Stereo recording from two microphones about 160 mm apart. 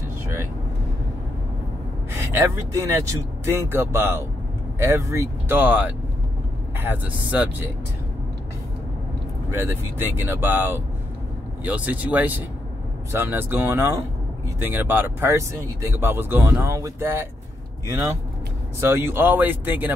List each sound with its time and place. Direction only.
2.3 s speech: 15° right (ahead or behind)
9.5 s speech: 15° right (ahead or behind)
18.8 s speech: 15° right (ahead or behind)